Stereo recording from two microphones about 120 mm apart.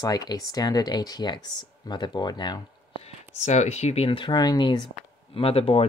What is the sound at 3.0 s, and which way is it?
Speech, 70° left (ahead or behind).